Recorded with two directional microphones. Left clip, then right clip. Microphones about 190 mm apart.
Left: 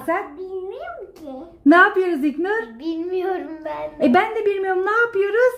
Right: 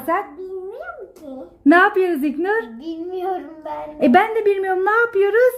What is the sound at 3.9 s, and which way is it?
A child's voice, 30° right (ahead or behind).